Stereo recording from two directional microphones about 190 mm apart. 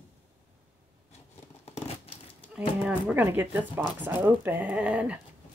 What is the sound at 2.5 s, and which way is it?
Speech, 5° right (ahead or behind).